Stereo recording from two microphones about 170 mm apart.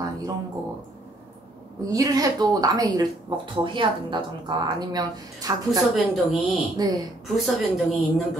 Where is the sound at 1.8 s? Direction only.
20° right (ahead or behind).